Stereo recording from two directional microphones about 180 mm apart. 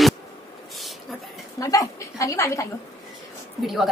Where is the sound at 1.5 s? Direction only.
20° left (ahead or behind).